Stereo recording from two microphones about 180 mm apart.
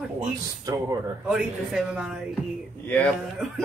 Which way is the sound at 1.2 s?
5° right (ahead or behind).